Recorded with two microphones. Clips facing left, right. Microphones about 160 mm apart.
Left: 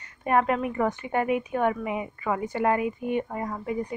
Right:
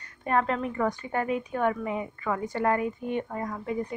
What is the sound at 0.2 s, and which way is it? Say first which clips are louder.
Speech: left 3 dB; 10° left (ahead or behind).